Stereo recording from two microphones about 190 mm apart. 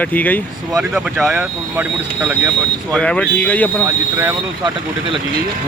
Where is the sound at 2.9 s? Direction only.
5° left (ahead or behind).